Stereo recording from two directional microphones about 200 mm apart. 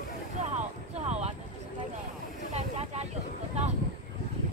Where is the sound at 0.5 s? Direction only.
30° right (ahead or behind).